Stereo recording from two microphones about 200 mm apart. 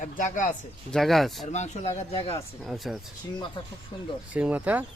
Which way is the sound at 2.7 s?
Centre (ahead or behind).